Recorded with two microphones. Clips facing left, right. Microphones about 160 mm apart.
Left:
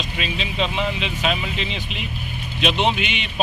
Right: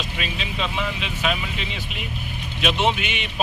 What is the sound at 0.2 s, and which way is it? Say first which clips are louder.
Vehicle: left 5 dB; 25° left (ahead or behind).